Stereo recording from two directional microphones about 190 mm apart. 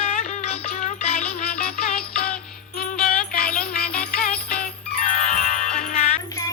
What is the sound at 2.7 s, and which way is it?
Music, 45° left (ahead or behind).